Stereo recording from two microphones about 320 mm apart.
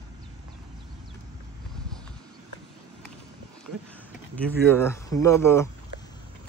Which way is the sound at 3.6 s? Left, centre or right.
Centre.